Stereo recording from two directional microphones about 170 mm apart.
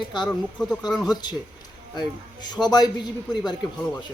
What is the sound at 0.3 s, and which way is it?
Speech, 5° left (ahead or behind).